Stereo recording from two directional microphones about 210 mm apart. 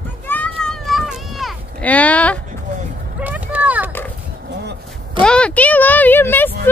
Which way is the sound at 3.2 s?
5° right (ahead or behind).